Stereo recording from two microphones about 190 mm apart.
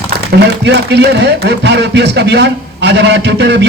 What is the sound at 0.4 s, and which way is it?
Speech, 60° right (ahead or behind).